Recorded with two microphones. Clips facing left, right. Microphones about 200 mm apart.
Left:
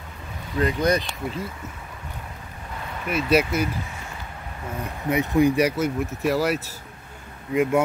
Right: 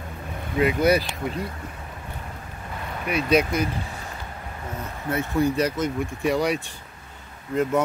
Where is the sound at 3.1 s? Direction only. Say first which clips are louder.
Even; 5° left (ahead or behind).